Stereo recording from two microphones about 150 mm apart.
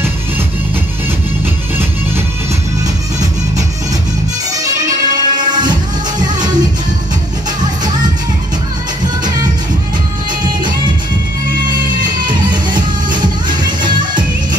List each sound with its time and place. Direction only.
4.6 s music: 25° right (ahead or behind)
12.3 s music: 30° right (ahead or behind)